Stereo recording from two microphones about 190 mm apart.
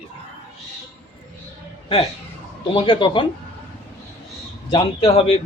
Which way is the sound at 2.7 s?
25° left (ahead or behind).